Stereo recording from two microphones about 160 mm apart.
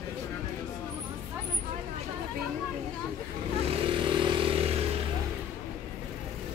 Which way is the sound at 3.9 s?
30° right (ahead or behind).